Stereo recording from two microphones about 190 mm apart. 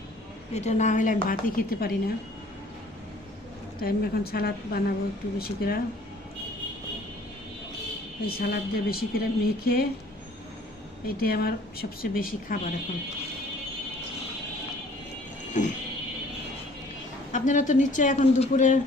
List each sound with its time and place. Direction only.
0.5 s speech: 35° left (ahead or behind); by 2.0 s 50° left (ahead or behind)
3.8 s speech: 50° left (ahead or behind)
8.3 s speech: 50° left (ahead or behind)
11.0 s speech: 50° left (ahead or behind)
17.3 s a woman's voice: 40° left (ahead or behind)